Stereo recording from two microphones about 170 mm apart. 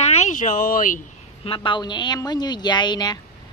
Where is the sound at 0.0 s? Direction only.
40° left (ahead or behind).